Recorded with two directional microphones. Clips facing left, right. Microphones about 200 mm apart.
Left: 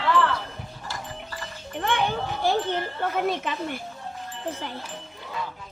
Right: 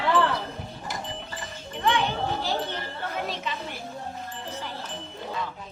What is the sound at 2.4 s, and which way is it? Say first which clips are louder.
Wind chime: left 5 dB; 50° left (ahead or behind).